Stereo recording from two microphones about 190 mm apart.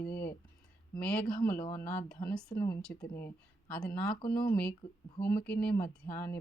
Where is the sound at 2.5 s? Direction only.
30° left (ahead or behind).